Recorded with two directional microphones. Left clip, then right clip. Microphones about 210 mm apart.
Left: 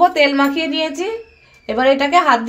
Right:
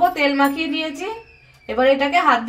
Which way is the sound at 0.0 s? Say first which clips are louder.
Left 4 dB; 50° left (ahead or behind).